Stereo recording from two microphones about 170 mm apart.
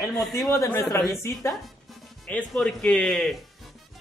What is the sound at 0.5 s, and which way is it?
Speech, 15° left (ahead or behind).